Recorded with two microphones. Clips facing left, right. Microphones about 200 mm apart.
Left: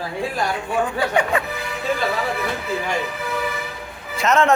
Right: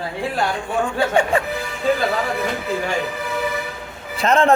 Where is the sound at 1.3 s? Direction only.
30° right (ahead or behind).